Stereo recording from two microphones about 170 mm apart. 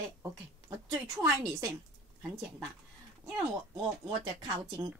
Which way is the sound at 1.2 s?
20° right (ahead or behind).